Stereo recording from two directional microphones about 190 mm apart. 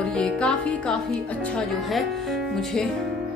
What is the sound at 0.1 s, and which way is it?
Music, 5° left (ahead or behind).